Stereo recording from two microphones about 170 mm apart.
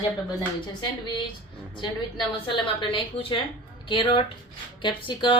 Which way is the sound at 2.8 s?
30° left (ahead or behind).